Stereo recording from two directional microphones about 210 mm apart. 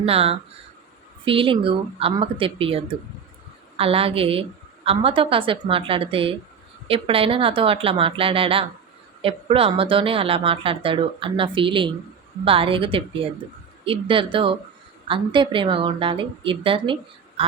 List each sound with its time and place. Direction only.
0.0 s a woman's voice: 30° right (ahead or behind)